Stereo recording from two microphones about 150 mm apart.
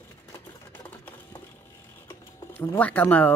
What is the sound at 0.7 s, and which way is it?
Sewing machine, 10° left (ahead or behind).